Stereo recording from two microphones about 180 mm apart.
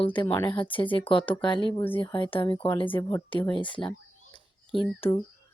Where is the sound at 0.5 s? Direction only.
25° left (ahead or behind).